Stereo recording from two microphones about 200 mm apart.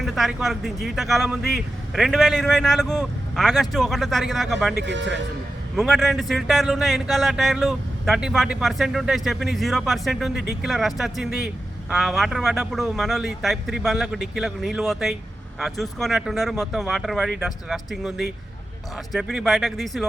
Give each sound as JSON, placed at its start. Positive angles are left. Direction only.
{"t": 0.0, "sound": "a man's voice", "side_deg": 0}
{"t": 4.8, "sound": "speech", "side_deg": -65}
{"t": 5.7, "sound": "a man's voice", "side_deg": 0}